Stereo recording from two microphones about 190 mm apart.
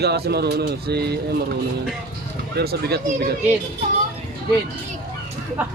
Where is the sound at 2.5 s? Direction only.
55° right (ahead or behind).